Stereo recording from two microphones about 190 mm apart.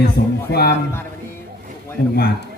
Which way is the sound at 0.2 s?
60° left (ahead or behind).